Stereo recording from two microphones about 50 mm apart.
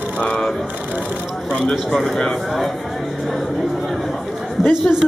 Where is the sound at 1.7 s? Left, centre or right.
Centre.